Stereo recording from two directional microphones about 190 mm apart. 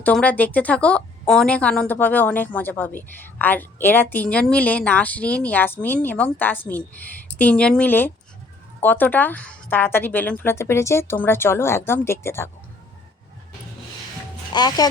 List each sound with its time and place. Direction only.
0.0 s a woman's voice: 5° left (ahead or behind)
14.5 s speech: 20° left (ahead or behind)